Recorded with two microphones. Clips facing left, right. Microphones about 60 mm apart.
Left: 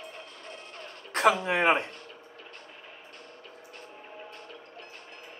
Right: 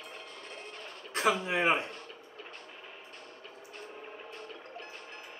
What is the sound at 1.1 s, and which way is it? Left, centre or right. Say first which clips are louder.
Speech: left 5 dB; left.